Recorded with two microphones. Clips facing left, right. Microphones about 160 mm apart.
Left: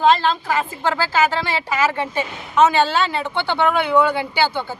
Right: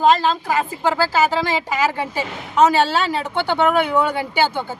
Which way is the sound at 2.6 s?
40° right (ahead or behind).